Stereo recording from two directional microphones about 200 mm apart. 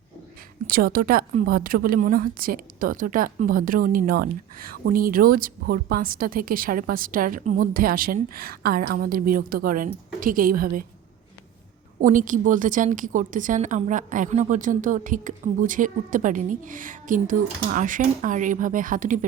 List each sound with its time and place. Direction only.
0.7 s a woman's voice: 45° right (ahead or behind)
11.9 s a woman's voice: 40° right (ahead or behind)